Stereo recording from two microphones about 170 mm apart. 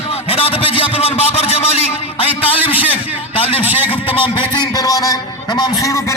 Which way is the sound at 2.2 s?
35° left (ahead or behind).